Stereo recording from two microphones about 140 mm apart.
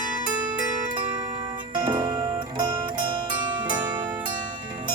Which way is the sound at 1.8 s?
30° right (ahead or behind).